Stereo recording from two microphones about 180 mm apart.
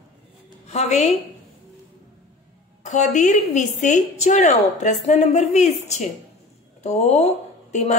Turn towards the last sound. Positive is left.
turn(degrees=40)  # may be behind; listen again after turning